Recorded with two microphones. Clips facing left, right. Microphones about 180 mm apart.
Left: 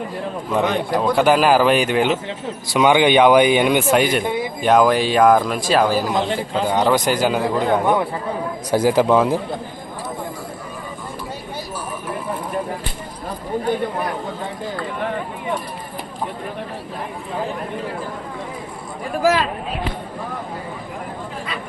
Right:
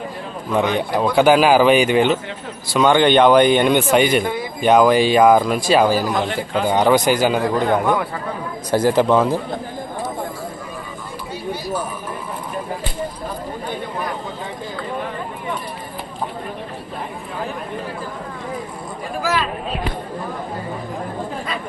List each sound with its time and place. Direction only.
0.5 s speech: centre (ahead or behind)
6.1 s a man's voice: 25° left (ahead or behind)
6.7 s speech: centre (ahead or behind)